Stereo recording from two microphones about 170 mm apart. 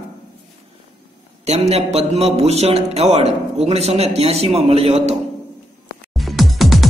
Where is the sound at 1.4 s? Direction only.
40° right (ahead or behind).